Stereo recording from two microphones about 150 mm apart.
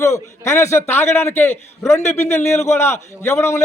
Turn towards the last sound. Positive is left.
turn(degrees=15)  # may be behind; listen again after turning